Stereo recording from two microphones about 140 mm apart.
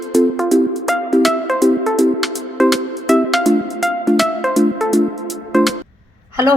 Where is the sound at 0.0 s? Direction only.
Centre (ahead or behind).